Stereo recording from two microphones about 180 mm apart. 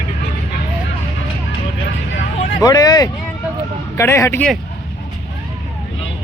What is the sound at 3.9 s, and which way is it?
Speech, 15° left (ahead or behind).